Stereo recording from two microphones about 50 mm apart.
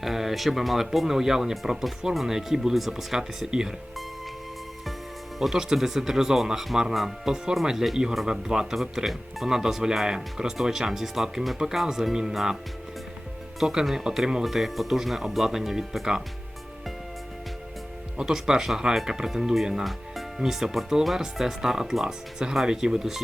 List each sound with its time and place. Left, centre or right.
0.0 s speech: centre
5.4 s speech: centre
13.6 s speech: centre
18.2 s speech: centre